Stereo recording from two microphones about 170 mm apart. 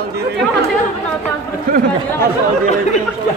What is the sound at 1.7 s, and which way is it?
Speech, 60° right (ahead or behind).